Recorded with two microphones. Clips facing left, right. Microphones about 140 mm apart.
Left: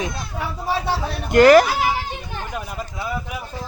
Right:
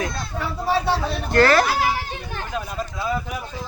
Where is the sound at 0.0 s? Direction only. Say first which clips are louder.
Even; 20° left (ahead or behind).